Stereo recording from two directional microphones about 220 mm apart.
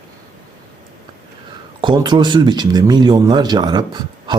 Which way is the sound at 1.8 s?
20° right (ahead or behind).